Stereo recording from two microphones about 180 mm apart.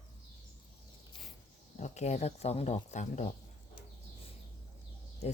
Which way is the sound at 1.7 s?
40° left (ahead or behind).